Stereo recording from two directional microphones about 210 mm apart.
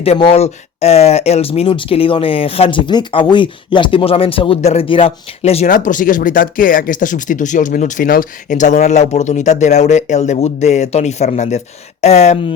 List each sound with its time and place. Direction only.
0.0 s speech: 25° left (ahead or behind)